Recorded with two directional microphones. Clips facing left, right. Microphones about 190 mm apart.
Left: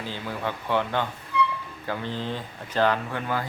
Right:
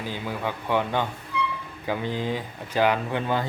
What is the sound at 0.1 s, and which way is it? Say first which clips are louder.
Speech: right 1 dB; 15° right (ahead or behind).